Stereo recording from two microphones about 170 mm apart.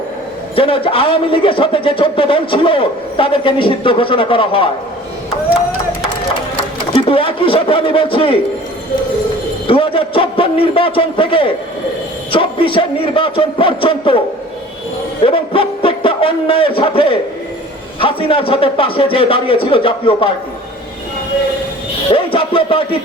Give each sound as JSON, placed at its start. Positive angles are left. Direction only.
{"t": 0.5, "sound": "a man's voice", "side_deg": 30}
{"t": 6.9, "sound": "a man's voice", "side_deg": 30}
{"t": 9.6, "sound": "a man's voice", "side_deg": 30}
{"t": 15.2, "sound": "a man's voice", "side_deg": 30}
{"t": 22.1, "sound": "a man's voice", "side_deg": 30}